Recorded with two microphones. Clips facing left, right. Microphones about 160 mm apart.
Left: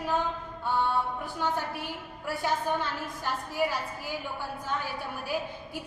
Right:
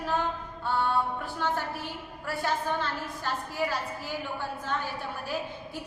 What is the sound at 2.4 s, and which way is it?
A woman's voice, 15° left (ahead or behind).